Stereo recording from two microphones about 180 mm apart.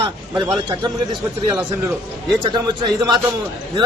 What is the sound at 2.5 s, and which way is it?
Speech, 25° right (ahead or behind).